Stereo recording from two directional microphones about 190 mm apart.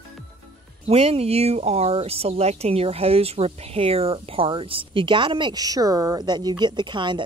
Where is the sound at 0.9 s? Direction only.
30° right (ahead or behind).